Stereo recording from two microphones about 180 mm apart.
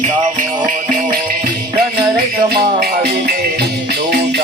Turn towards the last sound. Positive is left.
turn(degrees=-55)  # may be behind; listen again after turning